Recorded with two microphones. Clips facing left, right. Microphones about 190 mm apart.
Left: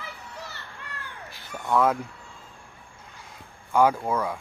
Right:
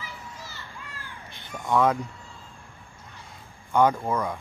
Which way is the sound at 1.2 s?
5° left (ahead or behind).